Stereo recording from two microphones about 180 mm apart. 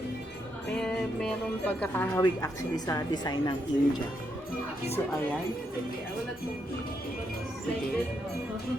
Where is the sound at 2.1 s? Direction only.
20° left (ahead or behind).